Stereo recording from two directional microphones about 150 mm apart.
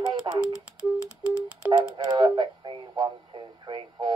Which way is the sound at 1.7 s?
30° right (ahead or behind).